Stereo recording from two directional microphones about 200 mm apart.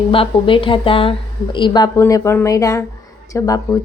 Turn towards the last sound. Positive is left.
turn(degrees=15)  # may be behind; listen again after turning